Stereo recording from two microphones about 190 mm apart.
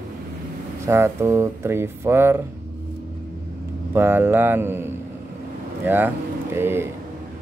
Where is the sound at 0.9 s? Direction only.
15° right (ahead or behind).